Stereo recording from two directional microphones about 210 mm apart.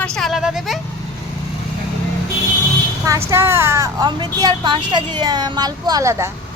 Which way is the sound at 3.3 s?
10° right (ahead or behind).